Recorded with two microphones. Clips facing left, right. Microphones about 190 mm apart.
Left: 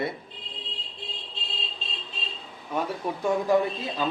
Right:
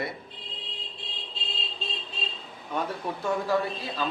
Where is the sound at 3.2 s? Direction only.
20° left (ahead or behind).